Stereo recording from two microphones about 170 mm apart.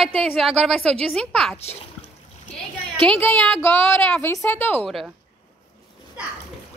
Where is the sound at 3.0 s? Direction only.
10° left (ahead or behind).